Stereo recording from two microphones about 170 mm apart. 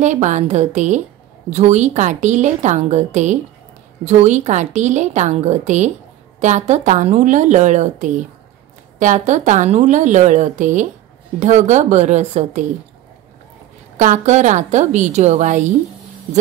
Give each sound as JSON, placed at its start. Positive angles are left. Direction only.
{"t": 0.0, "sound": "a woman's voice", "side_deg": -45}
{"t": 13.9, "sound": "a woman's voice", "side_deg": -45}